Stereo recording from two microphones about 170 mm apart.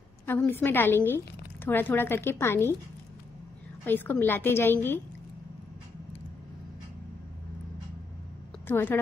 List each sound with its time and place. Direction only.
0.3 s speech: 10° left (ahead or behind)
3.8 s speech: 10° left (ahead or behind)
8.6 s speech: 10° left (ahead or behind)